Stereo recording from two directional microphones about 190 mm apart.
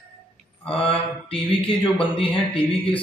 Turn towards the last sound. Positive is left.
turn(degrees=30)  # may be behind; listen again after turning